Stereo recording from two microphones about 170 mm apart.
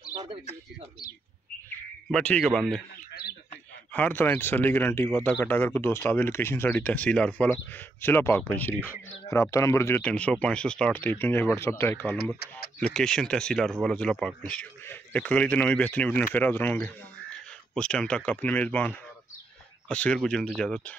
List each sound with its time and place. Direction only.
0.1 s a sound: 30° right (ahead or behind)
2.0 s speech: 5° left (ahead or behind)
3.9 s speech: 10° left (ahead or behind)